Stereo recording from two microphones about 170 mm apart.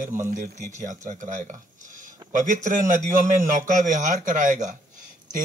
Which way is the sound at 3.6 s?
45° right (ahead or behind).